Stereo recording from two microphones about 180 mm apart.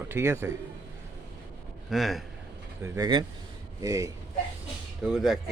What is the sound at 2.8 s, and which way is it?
Speech, 20° right (ahead or behind).